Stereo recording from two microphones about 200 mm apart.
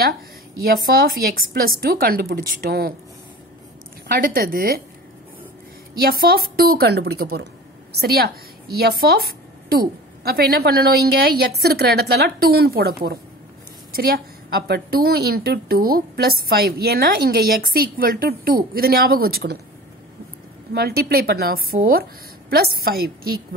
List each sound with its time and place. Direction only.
0.6 s a woman's voice: 50° right (ahead or behind)
4.1 s a woman's voice: 45° right (ahead or behind)
5.9 s a woman's voice: 50° right (ahead or behind)
20.7 s a woman's voice: 50° right (ahead or behind)